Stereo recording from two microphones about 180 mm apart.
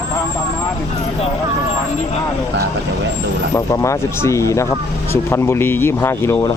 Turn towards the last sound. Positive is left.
turn(degrees=15)  # may be behind; listen again after turning